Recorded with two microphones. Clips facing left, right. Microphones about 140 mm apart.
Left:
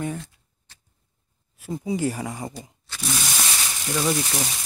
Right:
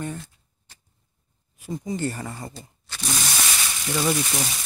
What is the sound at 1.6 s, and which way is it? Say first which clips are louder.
Speech: left 2 dB; 5° left (ahead or behind).